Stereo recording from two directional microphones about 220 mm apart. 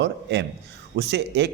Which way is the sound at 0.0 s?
50° right (ahead or behind).